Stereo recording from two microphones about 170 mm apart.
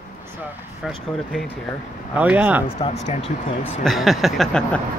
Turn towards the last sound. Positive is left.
turn(degrees=5)  # may be behind; listen again after turning